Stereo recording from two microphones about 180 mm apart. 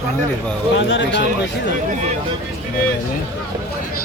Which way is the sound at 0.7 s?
85° left.